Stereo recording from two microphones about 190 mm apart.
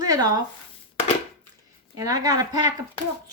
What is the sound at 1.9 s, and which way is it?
Speech, 20° right (ahead or behind).